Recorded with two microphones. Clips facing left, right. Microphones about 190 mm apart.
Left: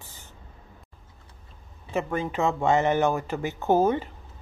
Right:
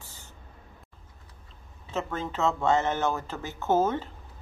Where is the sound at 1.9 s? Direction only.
15° left (ahead or behind).